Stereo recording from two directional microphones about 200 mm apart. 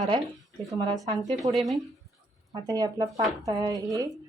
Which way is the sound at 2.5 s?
20° right (ahead or behind).